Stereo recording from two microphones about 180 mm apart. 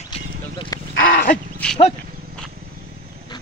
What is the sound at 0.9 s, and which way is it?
Wild animals, 90° left.